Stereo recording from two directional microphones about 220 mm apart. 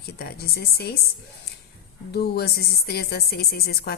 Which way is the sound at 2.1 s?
45° left (ahead or behind).